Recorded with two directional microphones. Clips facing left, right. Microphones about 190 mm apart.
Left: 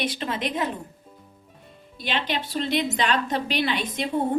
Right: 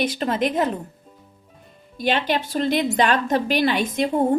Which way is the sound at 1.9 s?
45° right (ahead or behind).